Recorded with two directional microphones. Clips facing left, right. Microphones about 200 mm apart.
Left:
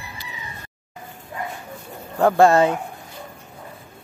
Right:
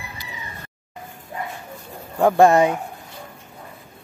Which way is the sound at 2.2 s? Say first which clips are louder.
Right 1 dB; 15° right (ahead or behind).